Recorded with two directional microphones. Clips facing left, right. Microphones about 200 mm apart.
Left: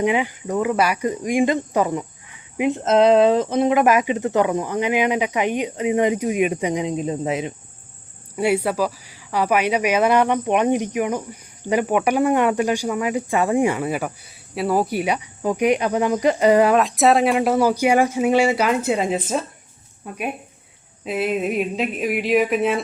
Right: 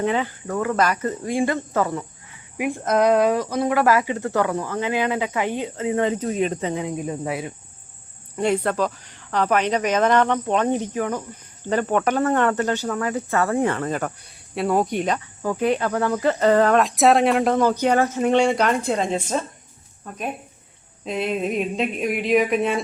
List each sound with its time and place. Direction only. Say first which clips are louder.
0.0 s speech: left 2 dB; 15° left (ahead or behind)
8.4 s speech: left 1 dB; 10° left (ahead or behind)